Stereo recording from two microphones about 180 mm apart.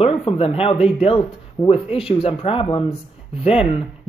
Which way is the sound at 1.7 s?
30° left (ahead or behind).